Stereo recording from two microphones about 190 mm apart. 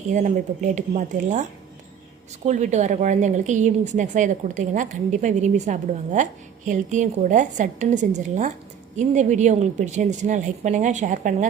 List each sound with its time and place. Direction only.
0.1 s speech: 40° right (ahead or behind)